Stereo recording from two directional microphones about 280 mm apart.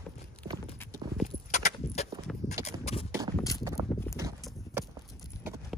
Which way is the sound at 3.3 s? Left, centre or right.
Centre.